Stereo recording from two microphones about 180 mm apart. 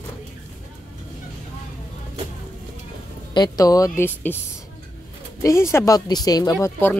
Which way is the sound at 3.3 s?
20° left (ahead or behind).